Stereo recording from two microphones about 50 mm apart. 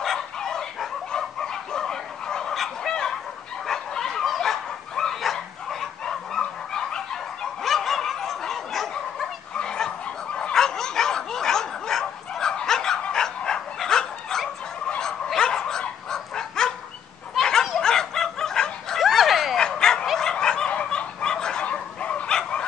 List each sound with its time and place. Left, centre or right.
0.0 s dog: centre
1.1 s fowl: centre
2.9 s chicken: centre
3.6 s dog: centre
7.6 s dog: centre
9.6 s fowl: centre
10.5 s dog: centre
17.4 s a sound: centre
18.9 s dog: centre
19.6 s bow-wow: centre
20.2 s fowl: centre